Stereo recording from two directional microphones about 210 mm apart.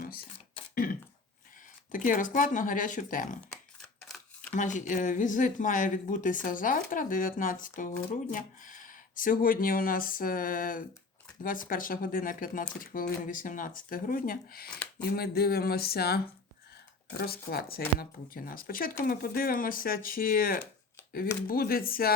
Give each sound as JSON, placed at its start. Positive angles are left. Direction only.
{"t": 1.9, "sound": "speech", "side_deg": 40}
{"t": 4.5, "sound": "speech", "side_deg": 35}